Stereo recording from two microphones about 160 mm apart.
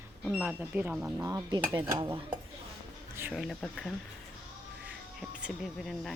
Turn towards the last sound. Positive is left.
turn(degrees=0)  # may be behind; listen again after turning